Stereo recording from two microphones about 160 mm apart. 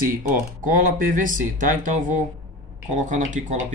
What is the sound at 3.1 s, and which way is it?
Speech, 50° right (ahead or behind).